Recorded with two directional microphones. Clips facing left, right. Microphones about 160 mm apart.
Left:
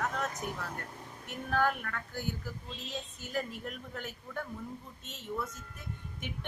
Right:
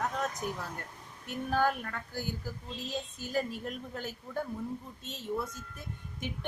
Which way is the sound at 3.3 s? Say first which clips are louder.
Right 3 dB; 30° right (ahead or behind).